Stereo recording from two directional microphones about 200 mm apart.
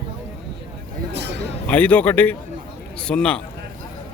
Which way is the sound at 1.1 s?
60° right (ahead or behind).